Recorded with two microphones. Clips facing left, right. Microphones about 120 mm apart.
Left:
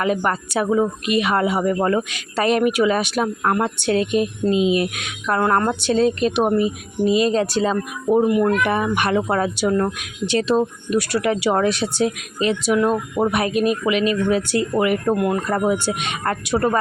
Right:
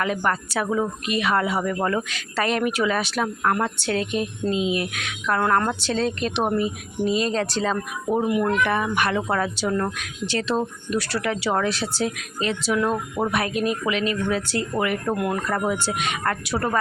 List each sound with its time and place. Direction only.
0.0 s speech: 15° left (ahead or behind)
15.1 s speech: centre (ahead or behind)
15.4 s speech: 20° left (ahead or behind)